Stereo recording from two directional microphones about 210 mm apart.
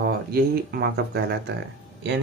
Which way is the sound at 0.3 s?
50° right (ahead or behind).